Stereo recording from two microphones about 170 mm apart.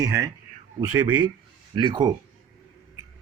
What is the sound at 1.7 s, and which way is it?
Speech, 25° right (ahead or behind).